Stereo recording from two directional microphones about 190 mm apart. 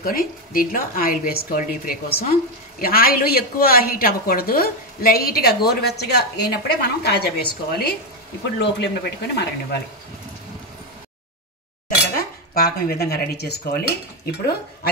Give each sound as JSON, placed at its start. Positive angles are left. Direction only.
{"t": 0.0, "sound": "a woman's voice", "side_deg": 50}
{"t": 12.2, "sound": "speech", "side_deg": 55}